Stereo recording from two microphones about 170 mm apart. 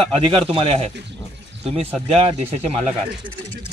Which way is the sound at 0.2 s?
30° right (ahead or behind).